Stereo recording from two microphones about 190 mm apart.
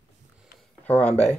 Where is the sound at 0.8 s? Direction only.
10° left (ahead or behind).